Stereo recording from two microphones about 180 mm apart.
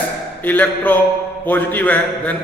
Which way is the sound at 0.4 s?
10° left (ahead or behind).